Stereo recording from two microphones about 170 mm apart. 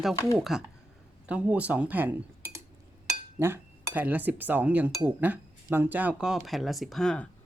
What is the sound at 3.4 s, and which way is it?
Cutlery, 10° right (ahead or behind).